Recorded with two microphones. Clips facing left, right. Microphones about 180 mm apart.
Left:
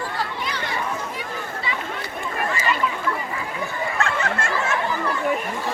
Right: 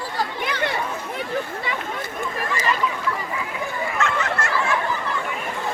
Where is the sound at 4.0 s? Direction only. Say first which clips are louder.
Even; 30° left (ahead or behind).